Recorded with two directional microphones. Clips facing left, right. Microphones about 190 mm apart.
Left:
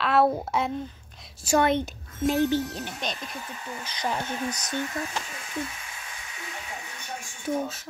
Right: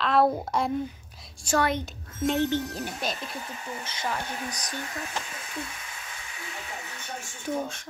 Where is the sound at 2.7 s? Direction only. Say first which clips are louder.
Right 1 dB; 5° right (ahead or behind).